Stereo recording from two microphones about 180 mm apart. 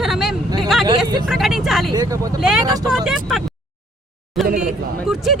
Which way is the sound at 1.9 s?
20° right (ahead or behind).